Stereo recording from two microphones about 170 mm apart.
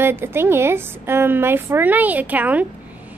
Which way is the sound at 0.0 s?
15° right (ahead or behind).